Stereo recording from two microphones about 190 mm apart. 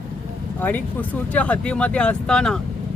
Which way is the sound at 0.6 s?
10° left (ahead or behind).